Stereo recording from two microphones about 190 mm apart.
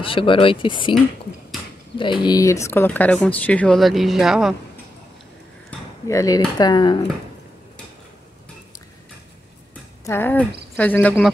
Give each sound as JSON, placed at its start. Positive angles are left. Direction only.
{"t": 0.0, "sound": "speech", "side_deg": 25}
{"t": 2.0, "sound": "speech", "side_deg": 25}
{"t": 6.0, "sound": "speech", "side_deg": 15}
{"t": 10.0, "sound": "speech", "side_deg": 10}